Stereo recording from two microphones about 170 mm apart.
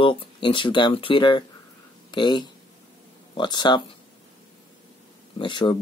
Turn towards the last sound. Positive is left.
turn(degrees=30)  # may be behind; listen again after turning